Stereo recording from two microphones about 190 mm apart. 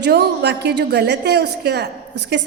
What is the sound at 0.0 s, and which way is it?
A woman's voice, 60° right (ahead or behind).